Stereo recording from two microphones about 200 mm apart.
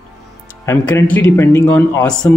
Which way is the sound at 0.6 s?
15° left (ahead or behind).